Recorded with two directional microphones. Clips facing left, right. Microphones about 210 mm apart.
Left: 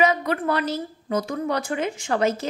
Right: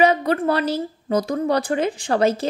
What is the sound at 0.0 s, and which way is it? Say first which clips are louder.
A woman's voice: right 4 dB; 30° right (ahead or behind).